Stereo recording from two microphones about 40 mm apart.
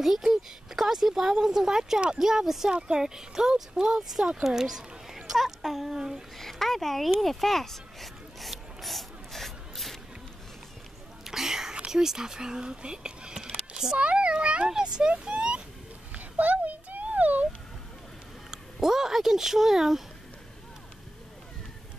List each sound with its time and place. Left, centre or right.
0.0 s speech: centre
5.9 s speech: centre
6.3 s a sound: centre
11.2 s whispering: centre
11.9 s speech: centre
13.9 s a child's voice: right
16.2 s a sound: right
18.5 s speech: centre